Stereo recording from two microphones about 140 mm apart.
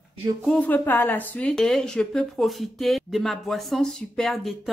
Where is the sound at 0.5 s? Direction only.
10° left (ahead or behind).